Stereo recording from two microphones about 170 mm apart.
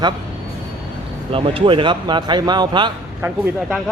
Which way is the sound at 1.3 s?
30° right (ahead or behind).